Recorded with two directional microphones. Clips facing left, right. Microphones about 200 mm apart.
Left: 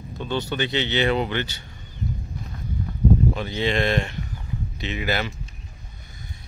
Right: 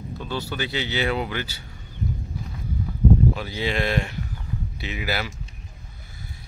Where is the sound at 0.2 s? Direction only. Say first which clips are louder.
Left 4 dB; 5° right (ahead or behind).